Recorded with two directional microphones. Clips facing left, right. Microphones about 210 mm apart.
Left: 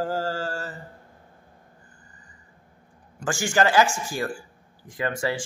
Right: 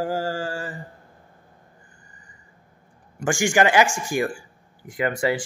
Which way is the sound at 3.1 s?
15° right (ahead or behind).